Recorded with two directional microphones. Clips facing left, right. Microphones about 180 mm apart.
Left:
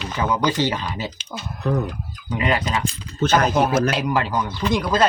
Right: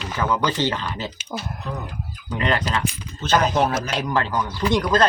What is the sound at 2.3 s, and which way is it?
Speech, 5° left (ahead or behind).